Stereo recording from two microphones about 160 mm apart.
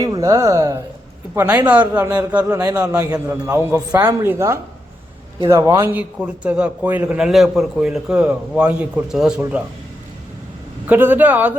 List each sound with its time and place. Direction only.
0.0 s a man's voice: 20° right (ahead or behind)
2.4 s a man's voice: 20° right (ahead or behind)
10.8 s a man's voice: 10° right (ahead or behind)